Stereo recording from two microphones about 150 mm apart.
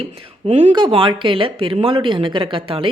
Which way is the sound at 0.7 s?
35° right (ahead or behind).